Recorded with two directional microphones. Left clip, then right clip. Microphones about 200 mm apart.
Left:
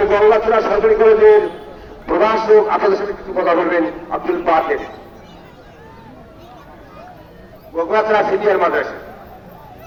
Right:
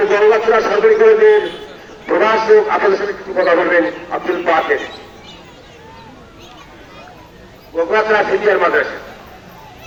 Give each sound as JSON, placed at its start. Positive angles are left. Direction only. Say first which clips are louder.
{"t": 0.0, "sound": "a man's voice", "louder": "right 1 dB", "side_deg": 55}
{"t": 7.8, "sound": "a man's voice", "louder": "right 1 dB", "side_deg": 55}